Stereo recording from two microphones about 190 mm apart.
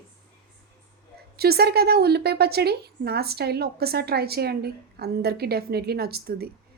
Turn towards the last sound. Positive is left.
turn(degrees=-55)  # may be behind; listen again after turning